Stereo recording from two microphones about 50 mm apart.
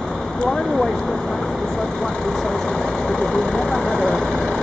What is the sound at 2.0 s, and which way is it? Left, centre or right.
Vehicle, centre.